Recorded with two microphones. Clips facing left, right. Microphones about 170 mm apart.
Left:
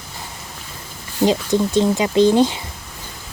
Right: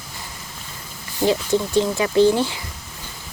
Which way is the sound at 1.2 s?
20° left (ahead or behind).